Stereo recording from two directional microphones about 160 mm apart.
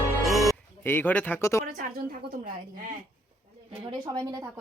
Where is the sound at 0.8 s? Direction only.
10° left (ahead or behind).